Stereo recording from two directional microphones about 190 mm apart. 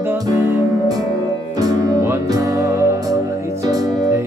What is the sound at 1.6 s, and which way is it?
Music, 20° right (ahead or behind).